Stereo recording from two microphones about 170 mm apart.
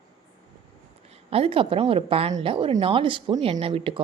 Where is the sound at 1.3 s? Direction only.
35° right (ahead or behind).